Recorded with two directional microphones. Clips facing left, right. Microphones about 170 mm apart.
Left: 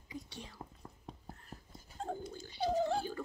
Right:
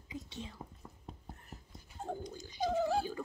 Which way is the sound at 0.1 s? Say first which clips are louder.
Right 2 dB; 20° right (ahead or behind).